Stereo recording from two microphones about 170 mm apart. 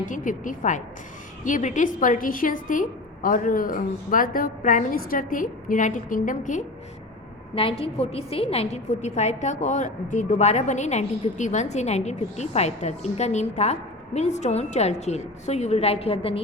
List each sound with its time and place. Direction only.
0.0 s a woman's voice: 50° left (ahead or behind)
7.5 s a woman's voice: 30° left (ahead or behind)